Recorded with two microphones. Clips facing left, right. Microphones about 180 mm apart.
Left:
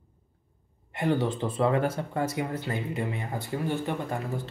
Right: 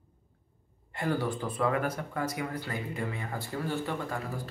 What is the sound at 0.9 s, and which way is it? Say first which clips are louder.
Speech: left 4 dB; 20° left (ahead or behind).